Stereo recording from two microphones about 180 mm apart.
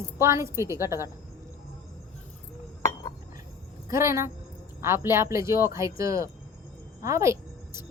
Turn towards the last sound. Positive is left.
turn(degrees=-15)  # may be behind; listen again after turning